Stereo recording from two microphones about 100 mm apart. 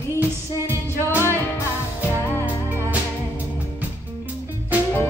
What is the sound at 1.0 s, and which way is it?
Music, 25° left (ahead or behind).